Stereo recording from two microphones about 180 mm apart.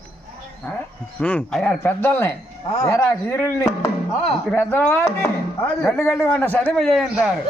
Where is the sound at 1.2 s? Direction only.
5° left (ahead or behind).